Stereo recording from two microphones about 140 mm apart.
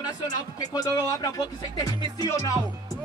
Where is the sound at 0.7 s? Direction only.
25° left (ahead or behind).